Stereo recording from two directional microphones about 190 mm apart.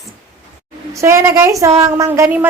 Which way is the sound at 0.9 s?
15° right (ahead or behind).